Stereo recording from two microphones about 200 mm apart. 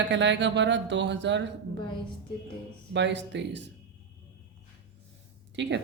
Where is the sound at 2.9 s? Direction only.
60° right (ahead or behind).